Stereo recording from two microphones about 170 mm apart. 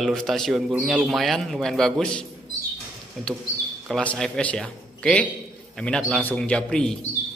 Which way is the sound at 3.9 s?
5° left (ahead or behind).